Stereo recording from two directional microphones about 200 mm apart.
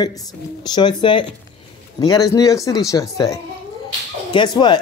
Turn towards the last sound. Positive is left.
turn(degrees=20)  # may be behind; listen again after turning